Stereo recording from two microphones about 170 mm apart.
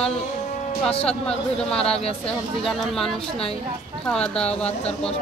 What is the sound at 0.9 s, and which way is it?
Speech, 35° left (ahead or behind).